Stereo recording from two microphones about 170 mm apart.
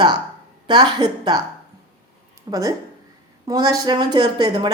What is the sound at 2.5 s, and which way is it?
Speech, 20° right (ahead or behind).